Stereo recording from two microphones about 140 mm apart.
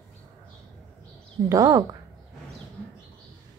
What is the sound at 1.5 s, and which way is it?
Speech, 25° right (ahead or behind).